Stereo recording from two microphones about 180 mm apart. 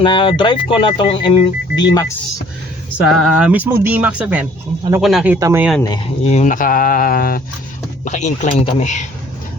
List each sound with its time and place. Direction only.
0.0 s speech: 25° left (ahead or behind)
3.0 s speech: centre (ahead or behind)
6.2 s speech: 40° left (ahead or behind)
8.0 s speech: 40° left (ahead or behind)